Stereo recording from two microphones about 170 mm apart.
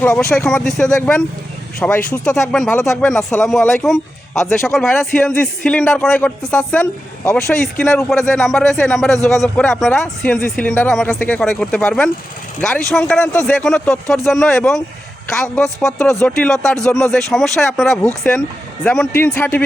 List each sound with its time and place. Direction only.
0.3 s speech: 5° left (ahead or behind)
3.0 s speech: centre (ahead or behind)
7.3 s speech: 15° left (ahead or behind)
8.3 s speech: centre (ahead or behind)